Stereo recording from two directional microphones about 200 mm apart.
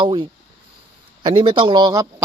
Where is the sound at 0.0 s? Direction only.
25° right (ahead or behind).